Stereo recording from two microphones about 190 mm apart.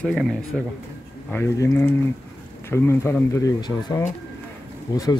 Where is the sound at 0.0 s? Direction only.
5° left (ahead or behind).